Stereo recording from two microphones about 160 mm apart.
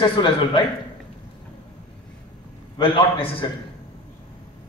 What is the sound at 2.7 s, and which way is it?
Speech, 35° left (ahead or behind).